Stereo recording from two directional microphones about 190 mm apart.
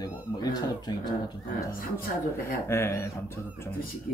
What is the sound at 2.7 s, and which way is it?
Speech, 15° left (ahead or behind).